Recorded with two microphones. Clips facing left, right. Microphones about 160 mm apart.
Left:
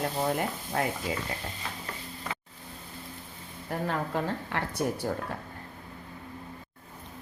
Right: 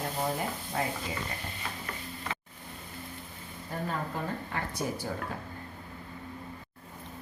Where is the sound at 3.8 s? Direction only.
70° left (ahead or behind).